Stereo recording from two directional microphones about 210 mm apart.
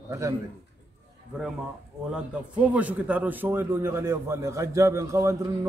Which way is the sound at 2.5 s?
5° right (ahead or behind).